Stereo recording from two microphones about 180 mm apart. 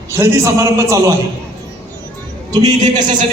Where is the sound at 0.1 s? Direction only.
15° right (ahead or behind).